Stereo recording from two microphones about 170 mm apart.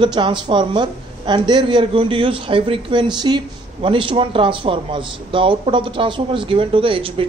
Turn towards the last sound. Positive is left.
turn(degrees=-30)  # may be behind; listen again after turning